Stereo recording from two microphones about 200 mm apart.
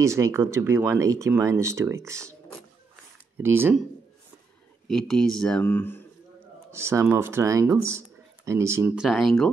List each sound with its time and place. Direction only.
0.0 s speech: 15° right (ahead or behind)
3.4 s speech: 10° right (ahead or behind)
4.8 s speech: centre (ahead or behind)
6.7 s speech: 15° right (ahead or behind)